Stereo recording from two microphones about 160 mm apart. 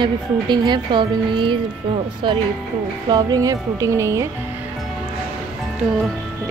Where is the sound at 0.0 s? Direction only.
30° right (ahead or behind).